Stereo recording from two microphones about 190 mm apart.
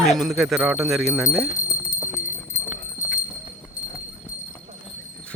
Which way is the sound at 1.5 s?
15° left (ahead or behind).